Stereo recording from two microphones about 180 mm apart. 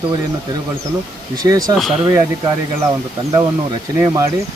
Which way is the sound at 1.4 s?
20° right (ahead or behind).